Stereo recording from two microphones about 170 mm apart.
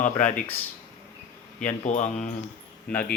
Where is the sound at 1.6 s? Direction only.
45° left (ahead or behind).